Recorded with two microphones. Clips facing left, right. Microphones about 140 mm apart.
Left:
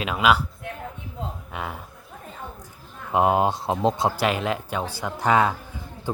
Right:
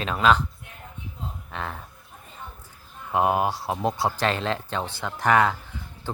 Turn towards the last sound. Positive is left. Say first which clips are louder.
# even
turn(degrees=15)  # may be behind; listen again after turning